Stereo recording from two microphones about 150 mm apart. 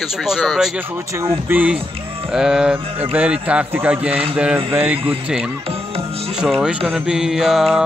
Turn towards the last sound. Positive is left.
turn(degrees=0)  # may be behind; listen again after turning